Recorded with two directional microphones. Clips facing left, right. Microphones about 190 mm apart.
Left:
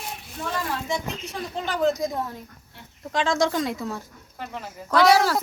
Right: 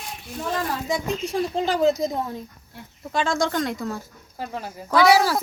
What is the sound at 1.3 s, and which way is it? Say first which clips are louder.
Speech: right 7 dB; 30° right (ahead or behind).